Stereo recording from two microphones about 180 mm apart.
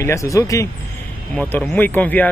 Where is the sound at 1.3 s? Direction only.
10° left (ahead or behind).